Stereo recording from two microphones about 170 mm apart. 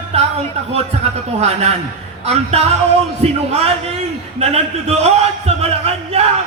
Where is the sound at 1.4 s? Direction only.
40° right (ahead or behind).